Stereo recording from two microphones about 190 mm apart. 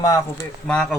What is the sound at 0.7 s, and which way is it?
Speech, 5° left (ahead or behind).